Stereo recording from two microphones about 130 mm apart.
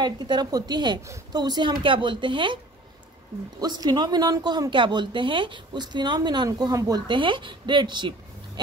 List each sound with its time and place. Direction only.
0.0 s speech: 35° right (ahead or behind)